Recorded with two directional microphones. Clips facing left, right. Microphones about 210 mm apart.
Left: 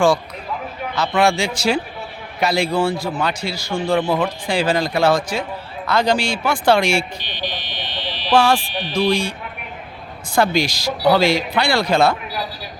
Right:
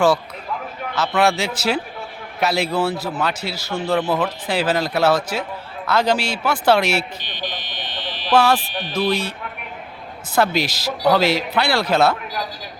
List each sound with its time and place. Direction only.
0.9 s a man's voice: 5° right (ahead or behind)
7.2 s fire alarm: 50° right (ahead or behind)
8.3 s a man's voice: 5° right (ahead or behind)